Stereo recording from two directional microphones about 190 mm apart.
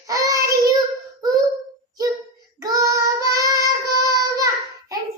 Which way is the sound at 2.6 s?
15° right (ahead or behind).